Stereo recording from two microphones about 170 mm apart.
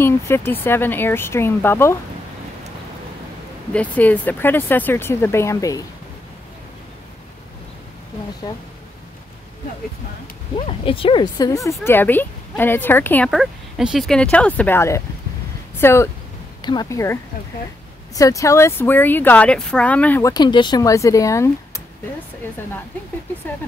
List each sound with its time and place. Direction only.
0.0 s speech: 15° left (ahead or behind)
3.7 s speech: 10° left (ahead or behind)
8.4 s speech: 25° left (ahead or behind)
10.5 s speech: 30° left (ahead or behind); by 13.3 s 10° left (ahead or behind)
13.3 s speech: centre (ahead or behind); by 21.8 s 15° left (ahead or behind)